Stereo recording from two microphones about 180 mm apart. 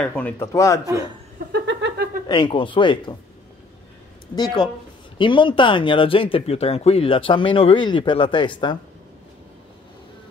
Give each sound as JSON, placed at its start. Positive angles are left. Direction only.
{"t": 0.0, "sound": "a man's voice", "side_deg": 10}
{"t": 1.5, "sound": "a sound", "side_deg": -75}
{"t": 2.2, "sound": "speech", "side_deg": 25}
{"t": 4.4, "sound": "speech", "side_deg": 25}